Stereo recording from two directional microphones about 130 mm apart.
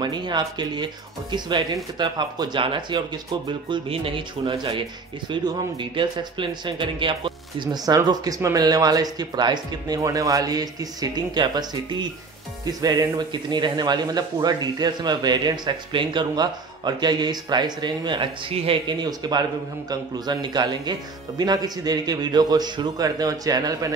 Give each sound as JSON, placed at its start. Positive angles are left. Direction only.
{"t": 0.0, "sound": "speech", "side_deg": -35}
{"t": 2.0, "sound": "speech", "side_deg": -35}
{"t": 18.9, "sound": "speech", "side_deg": -35}